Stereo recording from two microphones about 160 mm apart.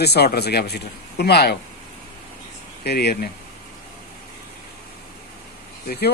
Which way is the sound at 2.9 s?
90° left.